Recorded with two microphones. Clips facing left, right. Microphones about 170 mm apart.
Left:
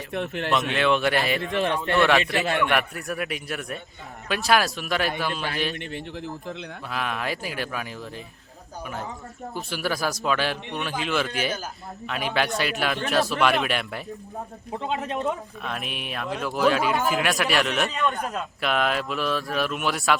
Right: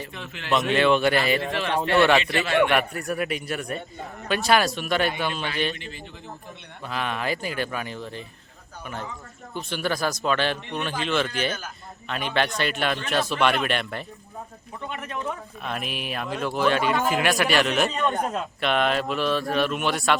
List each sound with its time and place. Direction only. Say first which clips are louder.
0.1 s speech: left 10 dB; 60° left (ahead or behind)
0.7 s speech: right 4 dB; centre (ahead or behind)
6.9 s speech: right 2 dB; centre (ahead or behind)
9.6 s speech: right 1 dB; 5° left (ahead or behind)
14.9 s speech: left 4 dB; 20° left (ahead or behind)
15.6 s speech: right 3 dB; centre (ahead or behind)